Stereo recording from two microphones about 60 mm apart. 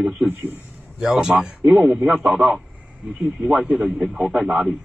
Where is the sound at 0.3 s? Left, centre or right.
Right.